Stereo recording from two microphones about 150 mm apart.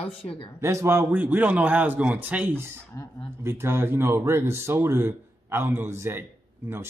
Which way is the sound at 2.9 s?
20° left (ahead or behind).